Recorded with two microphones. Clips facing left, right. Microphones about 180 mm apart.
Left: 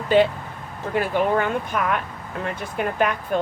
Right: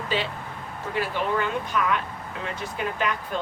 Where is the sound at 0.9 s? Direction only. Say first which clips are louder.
Left 6 dB; 50° left (ahead or behind).